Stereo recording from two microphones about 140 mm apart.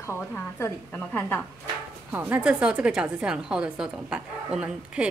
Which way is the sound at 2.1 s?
15° right (ahead or behind).